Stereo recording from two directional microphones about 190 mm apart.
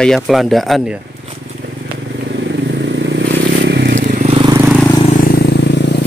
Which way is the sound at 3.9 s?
40° right (ahead or behind).